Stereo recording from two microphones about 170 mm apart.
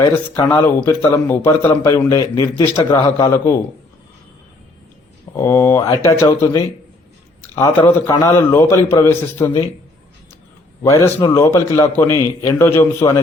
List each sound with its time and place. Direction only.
0.4 s a man's voice: 10° left (ahead or behind)
5.4 s a man's voice: 15° left (ahead or behind)
10.8 s a man's voice: 20° left (ahead or behind)